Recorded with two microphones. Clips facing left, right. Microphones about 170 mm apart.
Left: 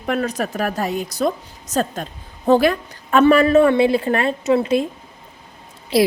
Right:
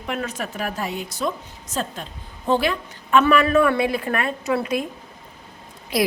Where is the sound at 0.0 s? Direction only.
40° left (ahead or behind).